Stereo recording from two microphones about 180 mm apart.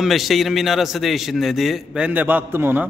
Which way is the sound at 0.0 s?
Centre (ahead or behind).